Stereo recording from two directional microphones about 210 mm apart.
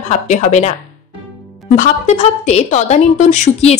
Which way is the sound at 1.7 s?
35° left (ahead or behind).